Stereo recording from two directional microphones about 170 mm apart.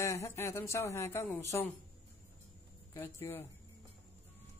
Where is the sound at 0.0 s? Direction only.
15° left (ahead or behind).